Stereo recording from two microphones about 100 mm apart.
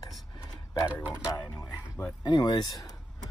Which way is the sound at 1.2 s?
40° left (ahead or behind).